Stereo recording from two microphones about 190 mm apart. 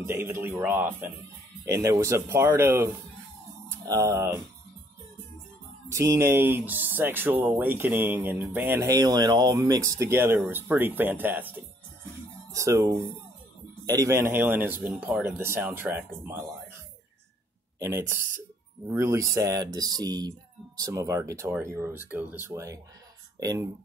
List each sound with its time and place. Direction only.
0.0 s speech: 10° right (ahead or behind)
5.9 s speech: 15° right (ahead or behind)
17.7 s speech: 15° right (ahead or behind)